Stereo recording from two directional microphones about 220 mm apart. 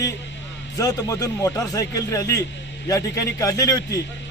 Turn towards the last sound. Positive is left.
turn(degrees=15)  # may be behind; listen again after turning